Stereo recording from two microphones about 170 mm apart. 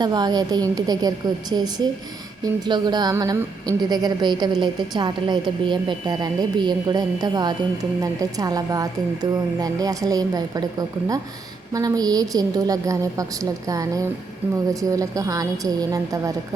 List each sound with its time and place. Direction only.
0.0 s a woman's voice: 25° right (ahead or behind)